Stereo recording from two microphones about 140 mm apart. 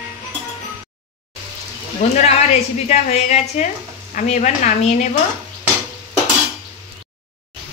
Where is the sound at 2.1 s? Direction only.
50° left (ahead or behind).